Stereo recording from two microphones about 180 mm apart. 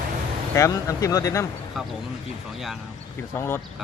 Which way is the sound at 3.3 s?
15° left (ahead or behind).